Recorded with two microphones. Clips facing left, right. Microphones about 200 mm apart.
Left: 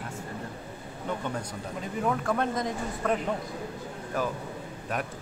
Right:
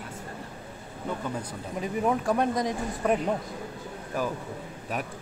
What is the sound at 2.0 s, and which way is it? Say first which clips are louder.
Speech: right 2 dB; 15° right (ahead or behind).